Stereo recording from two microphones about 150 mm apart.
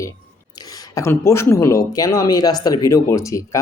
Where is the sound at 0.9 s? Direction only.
15° left (ahead or behind).